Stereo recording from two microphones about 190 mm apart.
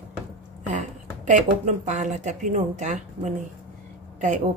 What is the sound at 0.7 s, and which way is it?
A woman's voice, 40° right (ahead or behind).